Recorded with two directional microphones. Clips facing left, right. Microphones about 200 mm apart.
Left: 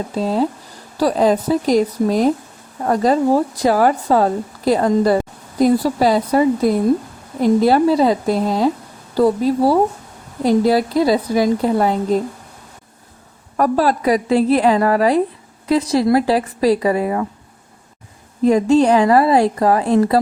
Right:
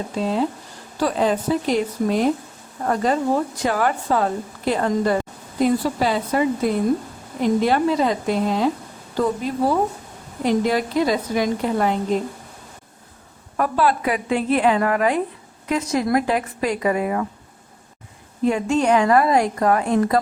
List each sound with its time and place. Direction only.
0.2 s a woman's voice: 40° left (ahead or behind)
13.6 s a woman's voice: 40° left (ahead or behind)
18.4 s a woman's voice: 35° left (ahead or behind)